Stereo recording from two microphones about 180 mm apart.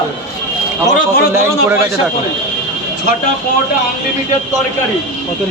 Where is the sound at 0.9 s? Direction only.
50° left (ahead or behind).